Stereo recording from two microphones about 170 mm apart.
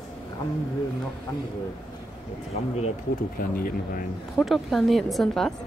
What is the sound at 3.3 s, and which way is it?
Speech, 60° left (ahead or behind).